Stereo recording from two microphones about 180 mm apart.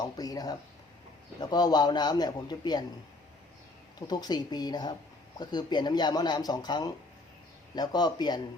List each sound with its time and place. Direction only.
0.0 s speech: 20° left (ahead or behind)
4.0 s speech: 20° left (ahead or behind)